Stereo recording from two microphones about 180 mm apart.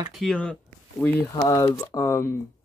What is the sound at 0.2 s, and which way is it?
Speech, 5° left (ahead or behind).